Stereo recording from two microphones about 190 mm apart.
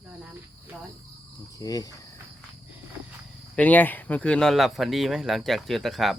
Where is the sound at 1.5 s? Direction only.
20° left (ahead or behind).